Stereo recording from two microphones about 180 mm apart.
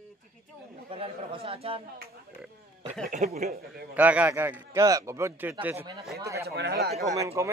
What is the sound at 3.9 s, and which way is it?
A man's voice, 10° right (ahead or behind).